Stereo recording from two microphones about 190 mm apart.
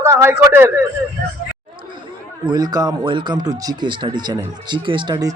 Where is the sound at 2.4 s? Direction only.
20° right (ahead or behind).